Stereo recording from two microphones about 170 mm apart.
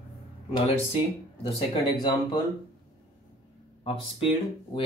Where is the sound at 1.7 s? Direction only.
25° left (ahead or behind).